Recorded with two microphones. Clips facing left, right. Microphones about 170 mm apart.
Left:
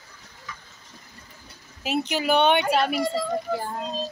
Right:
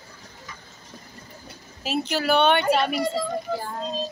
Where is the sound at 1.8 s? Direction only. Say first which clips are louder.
Even; 15° left (ahead or behind).